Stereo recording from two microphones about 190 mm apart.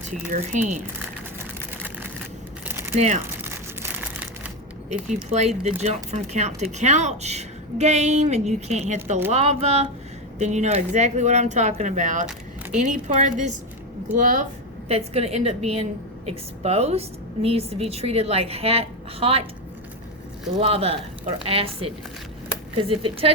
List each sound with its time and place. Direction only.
0.1 s speech: 40° right (ahead or behind)
2.6 s a sound: 10° right (ahead or behind)
5.0 s speech: 35° right (ahead or behind)
14.8 s speech: 35° right (ahead or behind)
20.6 s speech: 30° right (ahead or behind)